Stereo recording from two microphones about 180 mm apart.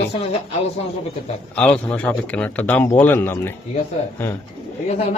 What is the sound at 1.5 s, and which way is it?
Speech, 5° left (ahead or behind).